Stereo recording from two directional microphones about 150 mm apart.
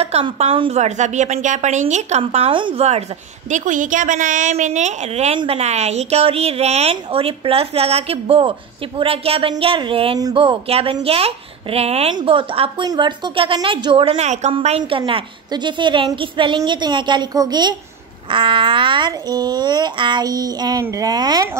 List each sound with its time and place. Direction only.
0.0 s a woman's voice: 45° right (ahead or behind)
3.4 s a woman's voice: 55° right (ahead or behind); by 21.5 s 30° right (ahead or behind)